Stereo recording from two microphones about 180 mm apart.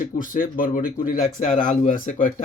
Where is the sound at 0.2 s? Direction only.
50° left (ahead or behind).